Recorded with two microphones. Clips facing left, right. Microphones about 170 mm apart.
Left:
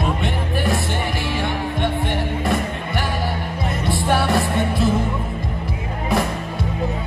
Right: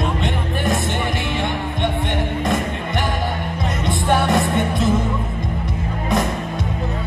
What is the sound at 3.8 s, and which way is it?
Music, 20° right (ahead or behind).